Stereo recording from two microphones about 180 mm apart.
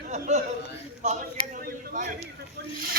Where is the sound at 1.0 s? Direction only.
45° right (ahead or behind).